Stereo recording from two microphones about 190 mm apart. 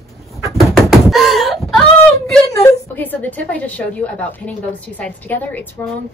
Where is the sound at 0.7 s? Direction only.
Centre (ahead or behind).